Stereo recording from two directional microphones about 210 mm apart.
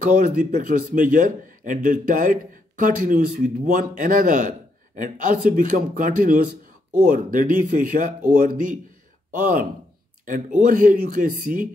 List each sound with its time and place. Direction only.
0.0 s speech: 40° right (ahead or behind)